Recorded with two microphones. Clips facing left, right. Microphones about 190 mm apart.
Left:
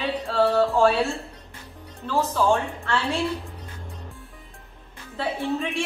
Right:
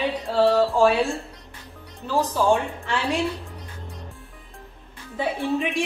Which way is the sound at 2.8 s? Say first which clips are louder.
Right 1 dB; 15° right (ahead or behind).